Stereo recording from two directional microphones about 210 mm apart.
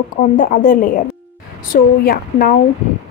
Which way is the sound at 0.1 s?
40° left (ahead or behind).